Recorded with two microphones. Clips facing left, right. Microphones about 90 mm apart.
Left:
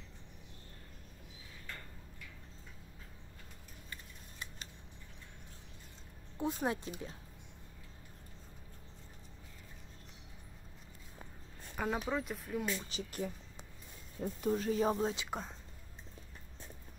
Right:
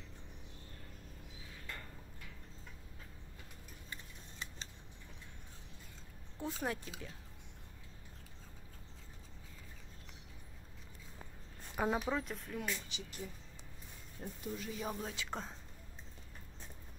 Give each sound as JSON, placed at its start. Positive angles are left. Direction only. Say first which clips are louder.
{"t": 3.9, "sound": "scissors", "louder": "even", "side_deg": -30}
{"t": 6.3, "sound": "speech", "louder": "left 4 dB", "side_deg": 20}
{"t": 11.7, "sound": "speech", "louder": "right 1 dB", "side_deg": -5}
{"t": 12.2, "sound": "speech", "louder": "left 3 dB", "side_deg": 5}
{"t": 12.9, "sound": "speech", "louder": "left 7 dB", "side_deg": 50}
{"t": 14.4, "sound": "speech", "louder": "left 10 dB", "side_deg": 45}
{"t": 15.0, "sound": "speech", "louder": "left 8 dB", "side_deg": 25}
{"t": 15.2, "sound": "speech", "louder": "left 2 dB", "side_deg": 5}